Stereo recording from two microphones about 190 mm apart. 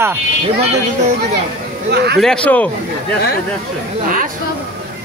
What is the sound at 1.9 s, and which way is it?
Speech, 60° right (ahead or behind).